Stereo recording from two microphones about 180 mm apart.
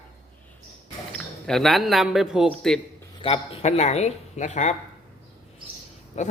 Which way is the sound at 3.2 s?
30° left (ahead or behind).